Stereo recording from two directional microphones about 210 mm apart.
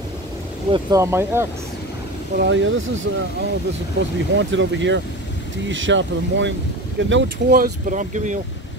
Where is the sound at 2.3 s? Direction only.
60° right (ahead or behind); by 8.4 s 35° right (ahead or behind).